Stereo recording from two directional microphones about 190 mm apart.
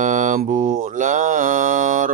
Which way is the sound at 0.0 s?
40° right (ahead or behind).